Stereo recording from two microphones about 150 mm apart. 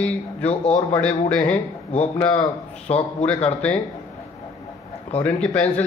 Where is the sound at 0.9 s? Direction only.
5° left (ahead or behind).